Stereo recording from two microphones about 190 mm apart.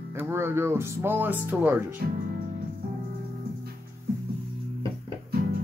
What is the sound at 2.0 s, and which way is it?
Speech, 55° right (ahead or behind).